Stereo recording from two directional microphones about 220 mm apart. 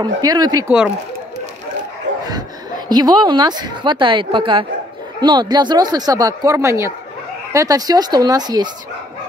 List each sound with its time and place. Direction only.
0.0 s speech: 15° right (ahead or behind)
2.9 s a woman's voice: 20° right (ahead or behind)